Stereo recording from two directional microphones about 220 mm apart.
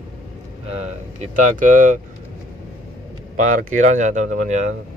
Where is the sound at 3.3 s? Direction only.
35° right (ahead or behind).